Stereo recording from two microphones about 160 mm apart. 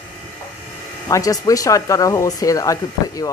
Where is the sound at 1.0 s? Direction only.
20° left (ahead or behind).